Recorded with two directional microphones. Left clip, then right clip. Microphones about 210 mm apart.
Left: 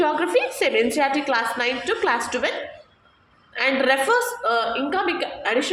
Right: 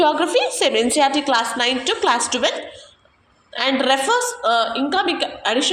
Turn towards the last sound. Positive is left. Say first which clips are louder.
# right 3 dB
turn(degrees=-30)  # may be behind; listen again after turning